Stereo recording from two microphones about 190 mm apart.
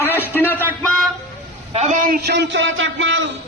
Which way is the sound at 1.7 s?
40° right (ahead or behind).